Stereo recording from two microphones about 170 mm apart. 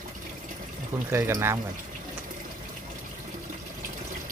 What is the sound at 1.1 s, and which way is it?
Speech, 15° right (ahead or behind).